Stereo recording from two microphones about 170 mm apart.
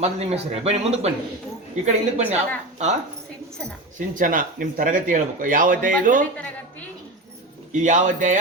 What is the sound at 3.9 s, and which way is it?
Speech, 50° right (ahead or behind).